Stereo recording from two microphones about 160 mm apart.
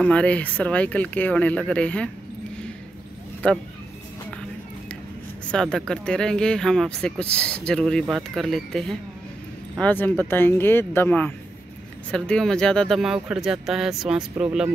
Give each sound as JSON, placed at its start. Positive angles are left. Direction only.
{"t": 0.0, "sound": "speech", "side_deg": 5}
{"t": 4.3, "sound": "music", "side_deg": 5}
{"t": 5.5, "sound": "speech", "side_deg": 5}